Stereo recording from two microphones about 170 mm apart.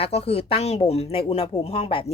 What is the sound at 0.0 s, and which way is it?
Speech, 35° left (ahead or behind).